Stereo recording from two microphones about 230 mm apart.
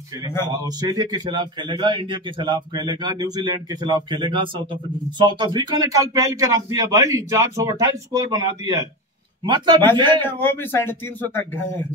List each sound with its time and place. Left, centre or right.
0.5 s a man's voice: centre
10.2 s speech: centre